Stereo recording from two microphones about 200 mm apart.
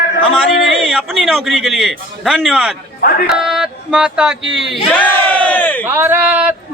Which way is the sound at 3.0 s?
45° left (ahead or behind).